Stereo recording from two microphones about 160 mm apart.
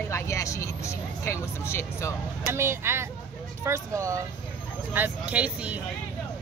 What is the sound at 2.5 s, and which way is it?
Speech, 15° right (ahead or behind).